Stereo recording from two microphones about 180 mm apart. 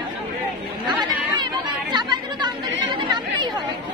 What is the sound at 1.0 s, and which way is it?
Chatter, 25° right (ahead or behind).